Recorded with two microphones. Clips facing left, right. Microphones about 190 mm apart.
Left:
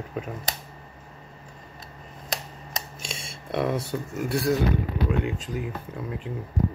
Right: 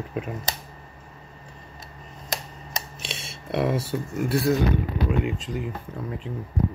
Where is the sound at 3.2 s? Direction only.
5° right (ahead or behind).